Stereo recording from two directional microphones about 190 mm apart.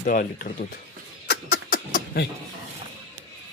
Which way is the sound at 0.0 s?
50° left (ahead or behind).